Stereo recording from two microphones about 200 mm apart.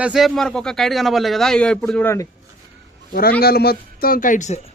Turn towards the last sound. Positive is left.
turn(degrees=35)  # may be behind; listen again after turning